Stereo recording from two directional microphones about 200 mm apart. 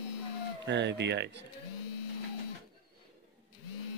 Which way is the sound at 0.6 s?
60° right (ahead or behind).